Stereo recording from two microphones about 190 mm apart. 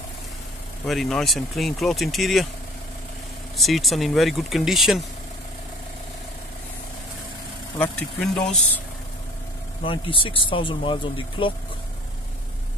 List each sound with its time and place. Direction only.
0.8 s speech: centre (ahead or behind)
3.5 s speech: centre (ahead or behind)
7.8 s speech: 5° left (ahead or behind)
9.8 s speech: 30° left (ahead or behind)